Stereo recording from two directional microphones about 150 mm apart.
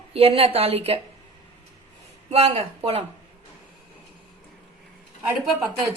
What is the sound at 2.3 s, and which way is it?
Speech, 40° right (ahead or behind).